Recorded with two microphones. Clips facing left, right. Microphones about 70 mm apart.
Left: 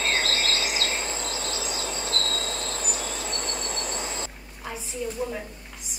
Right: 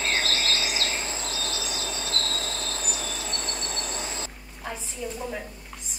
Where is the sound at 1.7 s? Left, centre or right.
Left.